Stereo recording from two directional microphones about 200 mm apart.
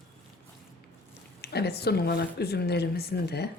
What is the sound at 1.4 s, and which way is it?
Speech, 55° left (ahead or behind).